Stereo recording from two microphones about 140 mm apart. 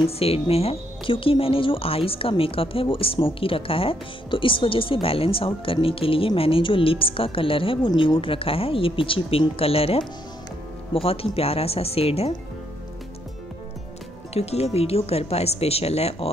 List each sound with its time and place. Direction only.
0.0 s speech: 45° left (ahead or behind)
14.3 s speech: 45° left (ahead or behind)